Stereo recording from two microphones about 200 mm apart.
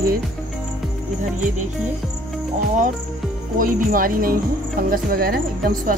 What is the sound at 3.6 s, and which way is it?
Speech, 45° right (ahead or behind).